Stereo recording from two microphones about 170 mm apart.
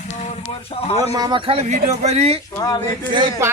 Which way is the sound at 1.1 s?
25° right (ahead or behind).